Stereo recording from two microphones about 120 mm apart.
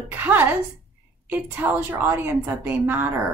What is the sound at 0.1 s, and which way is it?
A woman's voice, 15° right (ahead or behind).